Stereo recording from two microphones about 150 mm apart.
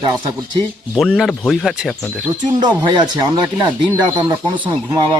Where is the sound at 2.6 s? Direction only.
30° right (ahead or behind).